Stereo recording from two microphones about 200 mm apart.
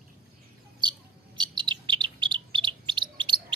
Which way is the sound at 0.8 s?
20° right (ahead or behind).